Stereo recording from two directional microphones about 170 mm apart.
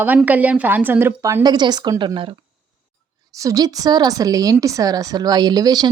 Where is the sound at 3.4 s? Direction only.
20° right (ahead or behind).